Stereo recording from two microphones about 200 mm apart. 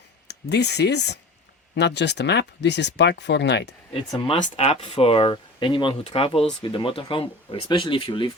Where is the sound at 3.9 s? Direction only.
25° left (ahead or behind).